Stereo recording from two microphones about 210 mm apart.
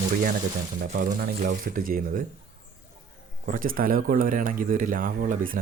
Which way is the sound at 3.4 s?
40° right (ahead or behind).